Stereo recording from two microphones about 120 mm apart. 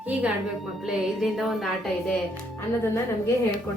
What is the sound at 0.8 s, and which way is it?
Music, centre (ahead or behind).